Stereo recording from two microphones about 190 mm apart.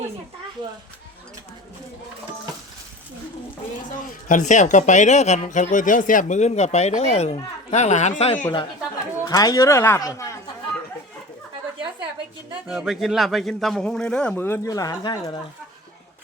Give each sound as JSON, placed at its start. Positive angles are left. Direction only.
{"t": 4.3, "sound": "speech", "side_deg": 40}
{"t": 9.2, "sound": "speech", "side_deg": 20}
{"t": 12.6, "sound": "a man's voice", "side_deg": -5}